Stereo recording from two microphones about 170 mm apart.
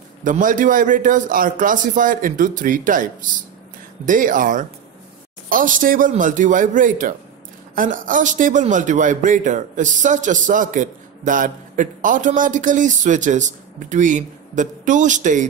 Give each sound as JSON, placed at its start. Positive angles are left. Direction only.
{"t": 0.2, "sound": "a man's voice", "side_deg": -50}